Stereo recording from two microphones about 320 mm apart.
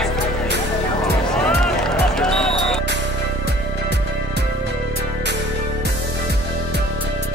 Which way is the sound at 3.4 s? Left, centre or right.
Right.